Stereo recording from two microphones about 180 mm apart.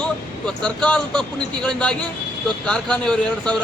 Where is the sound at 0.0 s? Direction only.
5° left (ahead or behind).